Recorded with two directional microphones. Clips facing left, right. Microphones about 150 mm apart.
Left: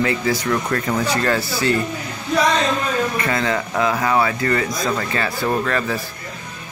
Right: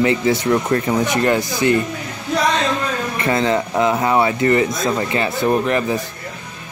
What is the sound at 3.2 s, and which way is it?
Speech, 25° right (ahead or behind).